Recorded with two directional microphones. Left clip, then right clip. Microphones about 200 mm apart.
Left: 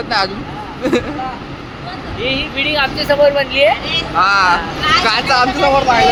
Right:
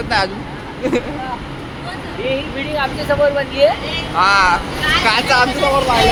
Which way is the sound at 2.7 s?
50° left (ahead or behind).